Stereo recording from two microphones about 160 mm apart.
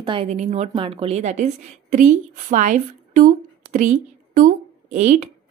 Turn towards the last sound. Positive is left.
turn(degrees=-45)  # may be behind; listen again after turning